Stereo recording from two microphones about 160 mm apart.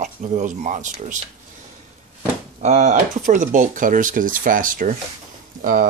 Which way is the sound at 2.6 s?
50° right (ahead or behind).